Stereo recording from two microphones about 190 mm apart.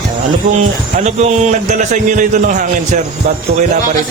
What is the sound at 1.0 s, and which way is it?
A man's voice, 35° right (ahead or behind).